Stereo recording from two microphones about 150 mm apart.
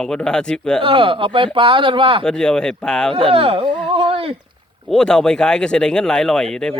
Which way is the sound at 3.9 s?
35° right (ahead or behind).